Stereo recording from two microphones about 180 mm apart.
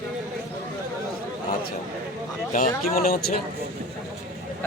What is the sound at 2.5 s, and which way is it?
Speech, 50° left (ahead or behind).